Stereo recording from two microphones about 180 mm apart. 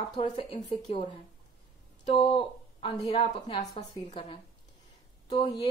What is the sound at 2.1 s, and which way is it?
Speech, 30° left (ahead or behind).